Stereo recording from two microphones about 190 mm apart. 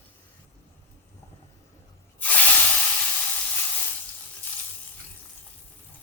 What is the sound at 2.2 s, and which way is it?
Spray, 10° left (ahead or behind).